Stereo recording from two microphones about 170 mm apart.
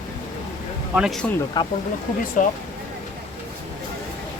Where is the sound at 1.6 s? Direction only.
25° left (ahead or behind).